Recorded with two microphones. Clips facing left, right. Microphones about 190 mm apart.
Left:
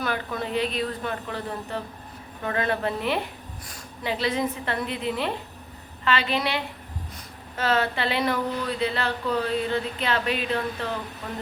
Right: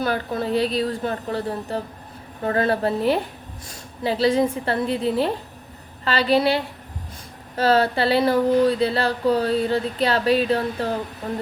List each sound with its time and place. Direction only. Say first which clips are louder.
0.0 s speech: right 5 dB; 30° right (ahead or behind)